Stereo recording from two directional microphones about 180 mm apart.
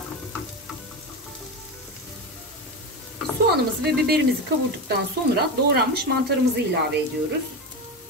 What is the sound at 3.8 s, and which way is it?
Speech, 60° right (ahead or behind).